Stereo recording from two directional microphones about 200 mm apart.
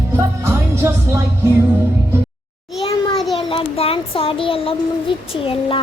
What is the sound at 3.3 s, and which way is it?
A child's voice, 25° left (ahead or behind).